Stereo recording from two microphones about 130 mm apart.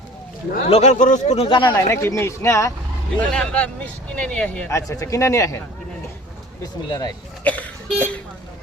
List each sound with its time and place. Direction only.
0.7 s speech: 65° left (ahead or behind)
1.4 s speech: 40° left (ahead or behind)
1.7 s speech: 20° left (ahead or behind)
3.2 s speech: 10° left (ahead or behind)
4.7 s speech: 25° left (ahead or behind)
7.4 s cough: 10° left (ahead or behind)
7.9 s speech: 10° left (ahead or behind)